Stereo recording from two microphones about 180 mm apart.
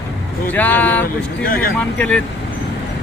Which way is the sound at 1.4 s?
55° left (ahead or behind).